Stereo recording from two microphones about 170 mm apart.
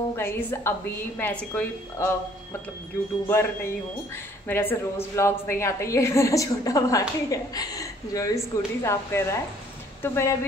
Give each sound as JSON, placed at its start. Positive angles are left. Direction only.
{"t": 0.1, "sound": "a woman's voice", "side_deg": 15}